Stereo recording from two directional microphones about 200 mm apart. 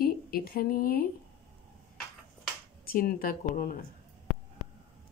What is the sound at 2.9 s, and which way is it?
Speech, 50° left (ahead or behind).